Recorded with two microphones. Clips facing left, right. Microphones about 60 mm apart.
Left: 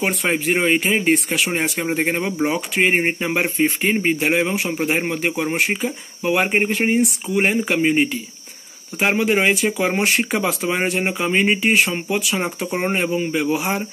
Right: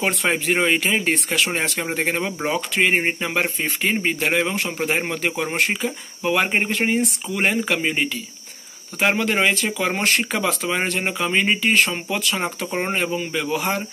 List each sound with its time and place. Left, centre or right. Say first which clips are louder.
0.0 s a man's voice: left 1 dB; centre
13.6 s speech: left 1 dB; centre